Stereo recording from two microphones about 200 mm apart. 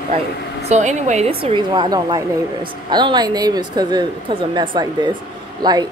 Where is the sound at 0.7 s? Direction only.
35° right (ahead or behind).